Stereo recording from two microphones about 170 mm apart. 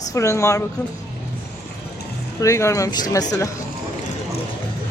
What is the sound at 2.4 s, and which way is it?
Speech, 15° left (ahead or behind).